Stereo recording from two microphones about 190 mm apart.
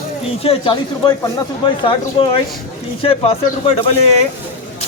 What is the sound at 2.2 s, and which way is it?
Speech, 25° left (ahead or behind).